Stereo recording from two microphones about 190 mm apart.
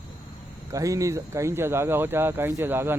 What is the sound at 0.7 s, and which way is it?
Speech, 15° right (ahead or behind).